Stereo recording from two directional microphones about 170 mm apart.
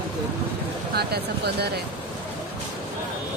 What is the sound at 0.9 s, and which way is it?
Speech, 70° right (ahead or behind).